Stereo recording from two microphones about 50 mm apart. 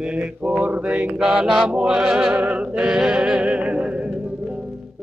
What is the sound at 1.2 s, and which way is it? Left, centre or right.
Music, centre.